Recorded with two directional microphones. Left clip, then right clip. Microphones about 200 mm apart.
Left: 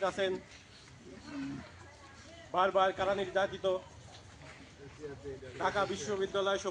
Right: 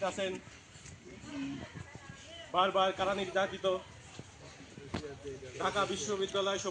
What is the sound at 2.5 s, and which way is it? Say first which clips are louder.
A man's voice: even; 45° right (ahead or behind).